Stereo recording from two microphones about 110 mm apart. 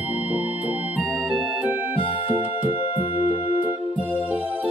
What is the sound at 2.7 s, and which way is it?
Music, 60° left (ahead or behind).